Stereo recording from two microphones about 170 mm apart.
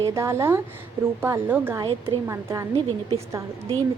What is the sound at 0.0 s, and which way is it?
A woman's voice, 15° right (ahead or behind).